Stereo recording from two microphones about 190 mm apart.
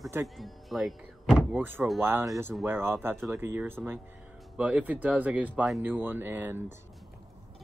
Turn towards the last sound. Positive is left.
turn(degrees=-10)  # may be behind; listen again after turning